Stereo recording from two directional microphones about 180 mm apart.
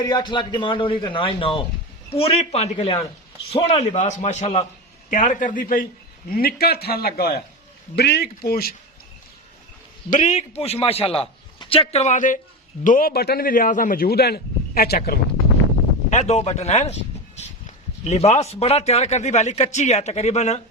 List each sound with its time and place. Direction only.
0.0 s a man's voice: 25° left (ahead or behind); by 8.7 s 60° left (ahead or behind)
10.1 s a man's voice: 40° left (ahead or behind); by 14.9 s 55° left (ahead or behind)
16.0 s a man's voice: 40° left (ahead or behind)
18.0 s a man's voice: 35° left (ahead or behind)